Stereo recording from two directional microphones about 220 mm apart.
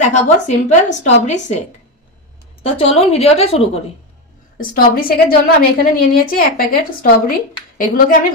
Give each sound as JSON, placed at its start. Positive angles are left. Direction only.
{"t": 0.1, "sound": "a woman's voice", "side_deg": 30}
{"t": 2.6, "sound": "a woman's voice", "side_deg": 25}
{"t": 4.6, "sound": "a woman's voice", "side_deg": 40}